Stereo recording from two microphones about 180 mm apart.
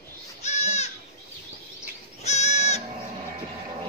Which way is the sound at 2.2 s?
40° left (ahead or behind).